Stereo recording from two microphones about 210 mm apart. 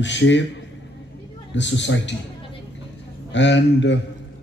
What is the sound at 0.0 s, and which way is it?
Speech, 60° left (ahead or behind).